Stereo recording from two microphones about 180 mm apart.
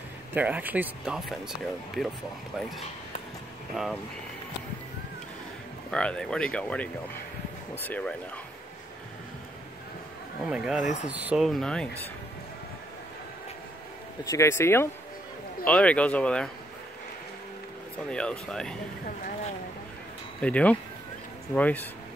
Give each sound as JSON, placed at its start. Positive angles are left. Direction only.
{"t": 0.3, "sound": "speech", "side_deg": -10}
{"t": 3.7, "sound": "speech", "side_deg": 0}
{"t": 5.9, "sound": "speech", "side_deg": 5}
{"t": 10.4, "sound": "speech", "side_deg": -5}
{"t": 10.8, "sound": "speech", "side_deg": 40}
{"t": 11.2, "sound": "speech", "side_deg": 0}
{"t": 14.2, "sound": "speech", "side_deg": 15}
{"t": 18.1, "sound": "speech", "side_deg": 5}
{"t": 20.3, "sound": "speech", "side_deg": 5}